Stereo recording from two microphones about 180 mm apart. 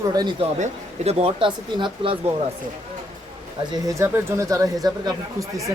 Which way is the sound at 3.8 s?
15° right (ahead or behind).